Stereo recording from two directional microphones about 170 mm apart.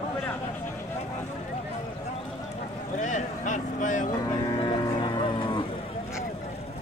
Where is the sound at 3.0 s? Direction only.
45° left (ahead or behind).